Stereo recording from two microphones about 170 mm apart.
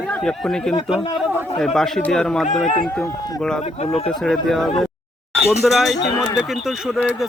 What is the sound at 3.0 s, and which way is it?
Speech, 20° left (ahead or behind).